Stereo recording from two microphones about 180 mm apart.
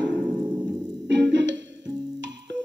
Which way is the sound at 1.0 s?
90° right.